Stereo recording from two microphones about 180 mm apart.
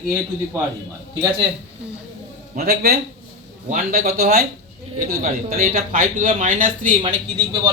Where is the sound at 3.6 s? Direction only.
45° right (ahead or behind).